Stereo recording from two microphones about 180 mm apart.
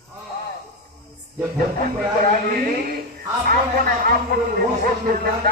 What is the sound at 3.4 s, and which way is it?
Speech, 55° right (ahead or behind).